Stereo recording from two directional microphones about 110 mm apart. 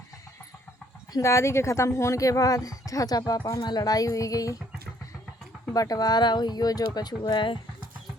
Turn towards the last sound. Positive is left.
turn(degrees=45)  # may be behind; listen again after turning